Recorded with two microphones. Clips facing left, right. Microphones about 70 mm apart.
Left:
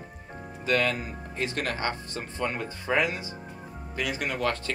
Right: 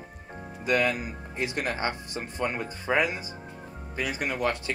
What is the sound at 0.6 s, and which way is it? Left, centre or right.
Speech, centre.